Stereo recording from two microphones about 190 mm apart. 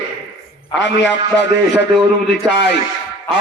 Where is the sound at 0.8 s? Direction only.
70° left (ahead or behind).